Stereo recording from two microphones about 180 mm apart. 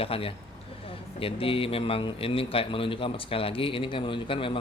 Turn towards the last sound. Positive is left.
turn(degrees=30)  # may be behind; listen again after turning